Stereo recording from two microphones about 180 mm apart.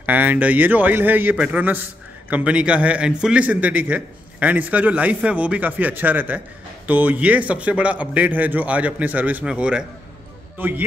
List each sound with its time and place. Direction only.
0.0 s a man's voice: 10° right (ahead or behind)